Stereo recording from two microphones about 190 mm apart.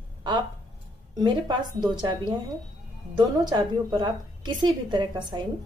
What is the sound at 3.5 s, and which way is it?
A woman's voice, 25° right (ahead or behind).